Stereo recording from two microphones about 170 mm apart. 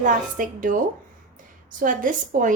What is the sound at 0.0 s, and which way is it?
Speech, 50° right (ahead or behind).